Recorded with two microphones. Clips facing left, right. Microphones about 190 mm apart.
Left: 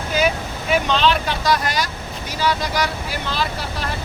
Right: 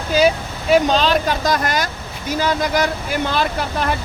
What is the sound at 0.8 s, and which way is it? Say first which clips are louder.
Speech: right 2 dB; 40° right (ahead or behind).